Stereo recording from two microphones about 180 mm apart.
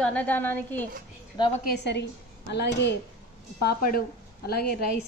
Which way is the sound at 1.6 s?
70° left (ahead or behind).